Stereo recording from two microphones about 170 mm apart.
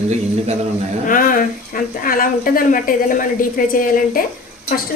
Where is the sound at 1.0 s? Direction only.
55° left (ahead or behind).